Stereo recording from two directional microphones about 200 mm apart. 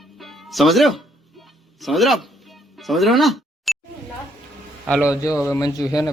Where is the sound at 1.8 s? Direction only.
Centre (ahead or behind).